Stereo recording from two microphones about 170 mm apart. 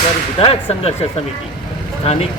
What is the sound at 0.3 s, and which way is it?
Speech, 35° left (ahead or behind).